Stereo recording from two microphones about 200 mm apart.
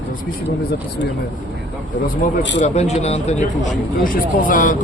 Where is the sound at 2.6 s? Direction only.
35° left (ahead or behind).